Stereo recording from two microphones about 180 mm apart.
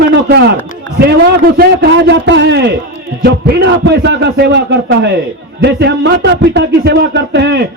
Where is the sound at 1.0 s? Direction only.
65° right (ahead or behind); by 2.6 s 80° right.